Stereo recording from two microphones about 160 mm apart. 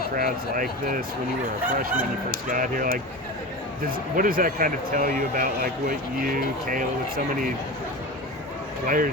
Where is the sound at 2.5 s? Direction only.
60° right (ahead or behind).